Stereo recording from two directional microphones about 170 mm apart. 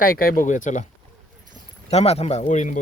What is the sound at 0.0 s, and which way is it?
Speech, 60° left (ahead or behind).